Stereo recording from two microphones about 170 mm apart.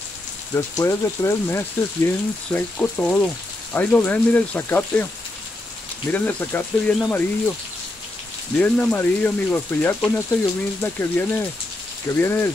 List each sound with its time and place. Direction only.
0.6 s speech: 15° left (ahead or behind)
6.1 s speech: 10° left (ahead or behind)
8.5 s speech: 10° left (ahead or behind)